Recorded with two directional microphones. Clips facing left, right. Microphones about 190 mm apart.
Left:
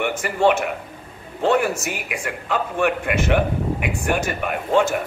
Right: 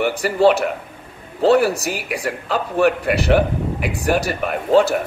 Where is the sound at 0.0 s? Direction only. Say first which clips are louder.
Right 4 dB; 35° right (ahead or behind).